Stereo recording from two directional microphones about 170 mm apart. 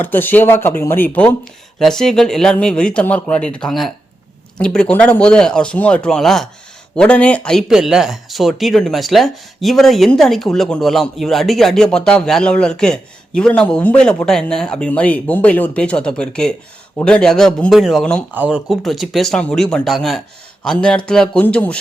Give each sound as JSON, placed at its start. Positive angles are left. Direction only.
{"t": 0.0, "sound": "speech", "side_deg": 10}